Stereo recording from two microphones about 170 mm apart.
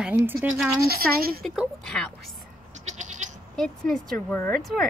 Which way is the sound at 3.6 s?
10° left (ahead or behind).